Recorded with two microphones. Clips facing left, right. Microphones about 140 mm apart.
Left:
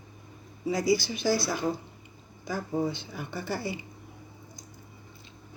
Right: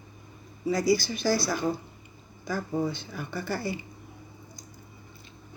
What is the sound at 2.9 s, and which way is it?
Speech, 20° left (ahead or behind).